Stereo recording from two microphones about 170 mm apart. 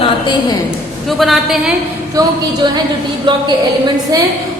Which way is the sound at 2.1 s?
25° right (ahead or behind).